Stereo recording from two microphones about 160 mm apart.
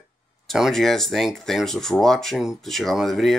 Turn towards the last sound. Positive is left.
turn(degrees=0)  # may be behind; listen again after turning